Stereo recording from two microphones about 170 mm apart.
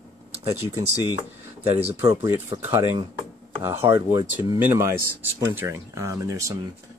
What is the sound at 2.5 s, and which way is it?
Speech, 25° right (ahead or behind).